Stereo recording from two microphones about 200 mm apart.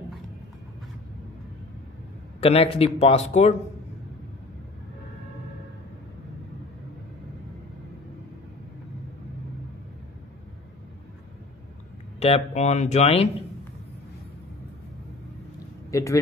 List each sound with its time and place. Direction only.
2.4 s speech: 30° left (ahead or behind)
12.2 s speech: 30° left (ahead or behind)
15.9 s speech: 15° left (ahead or behind)